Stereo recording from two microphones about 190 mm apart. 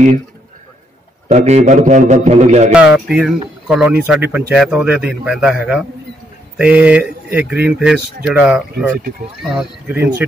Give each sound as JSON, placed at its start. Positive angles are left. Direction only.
{"t": 1.3, "sound": "a man's voice", "side_deg": -35}
{"t": 2.7, "sound": "speech", "side_deg": -5}